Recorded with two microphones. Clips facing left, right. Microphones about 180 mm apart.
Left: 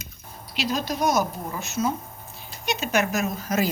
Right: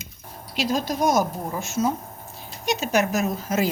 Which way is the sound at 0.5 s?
45° right (ahead or behind).